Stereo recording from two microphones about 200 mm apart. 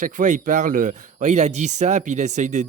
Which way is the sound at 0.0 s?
40° right (ahead or behind).